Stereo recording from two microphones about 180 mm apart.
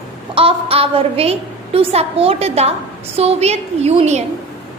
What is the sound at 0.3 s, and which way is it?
A woman's voice, 30° right (ahead or behind).